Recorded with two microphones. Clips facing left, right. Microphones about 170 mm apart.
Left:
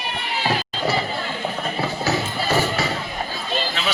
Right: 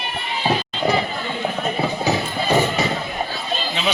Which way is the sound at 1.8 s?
15° right (ahead or behind).